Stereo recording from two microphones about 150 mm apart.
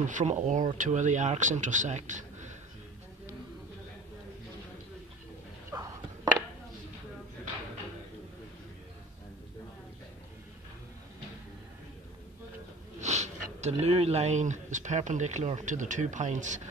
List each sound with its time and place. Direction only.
0.0 s speech: 55° right (ahead or behind)
5.7 s a sound: 20° right (ahead or behind)
13.0 s speech: 50° right (ahead or behind)